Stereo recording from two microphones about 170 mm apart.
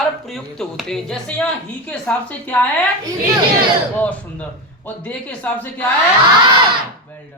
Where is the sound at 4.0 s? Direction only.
10° left (ahead or behind).